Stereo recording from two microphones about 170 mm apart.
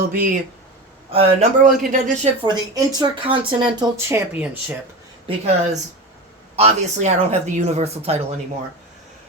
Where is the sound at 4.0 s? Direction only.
15° right (ahead or behind).